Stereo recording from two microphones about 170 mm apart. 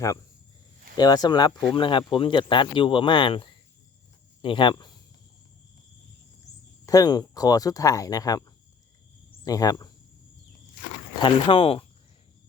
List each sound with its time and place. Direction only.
0.9 s speech: 25° left (ahead or behind)
6.8 s speech: 20° left (ahead or behind)
11.2 s speech: 30° left (ahead or behind)